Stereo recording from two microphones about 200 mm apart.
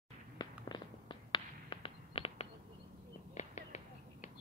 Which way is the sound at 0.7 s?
20° left (ahead or behind).